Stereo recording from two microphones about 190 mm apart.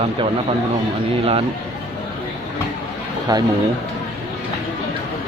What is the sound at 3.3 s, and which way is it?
Speech, 20° right (ahead or behind).